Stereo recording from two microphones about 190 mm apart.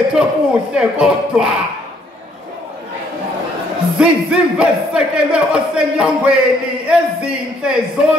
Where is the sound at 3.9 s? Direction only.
5° right (ahead or behind).